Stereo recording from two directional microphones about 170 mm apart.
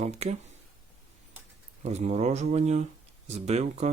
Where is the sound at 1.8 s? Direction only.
40° right (ahead or behind).